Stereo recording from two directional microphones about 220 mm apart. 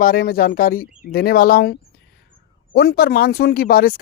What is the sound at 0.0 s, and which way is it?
Speech, 40° left (ahead or behind).